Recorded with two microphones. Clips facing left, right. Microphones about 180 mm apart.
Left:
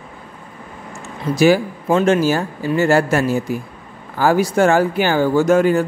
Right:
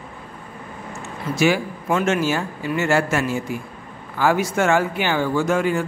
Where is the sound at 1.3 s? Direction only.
35° left (ahead or behind).